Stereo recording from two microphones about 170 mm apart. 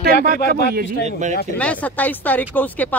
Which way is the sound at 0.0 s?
55° right (ahead or behind).